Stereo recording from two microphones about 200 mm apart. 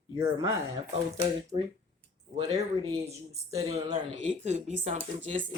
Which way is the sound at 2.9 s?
30° right (ahead or behind).